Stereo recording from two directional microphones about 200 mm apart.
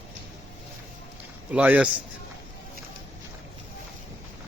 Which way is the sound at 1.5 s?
10° right (ahead or behind).